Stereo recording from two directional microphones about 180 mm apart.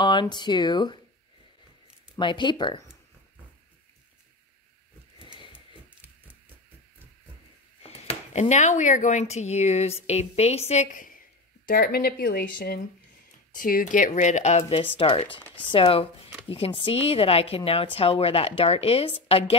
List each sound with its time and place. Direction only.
0.0 s speech: 25° left (ahead or behind)
2.1 s speech: 25° left (ahead or behind)
7.8 s speech: 35° left (ahead or behind)